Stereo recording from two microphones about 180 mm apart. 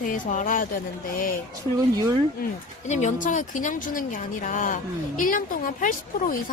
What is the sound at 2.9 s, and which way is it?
Speech, 40° left (ahead or behind).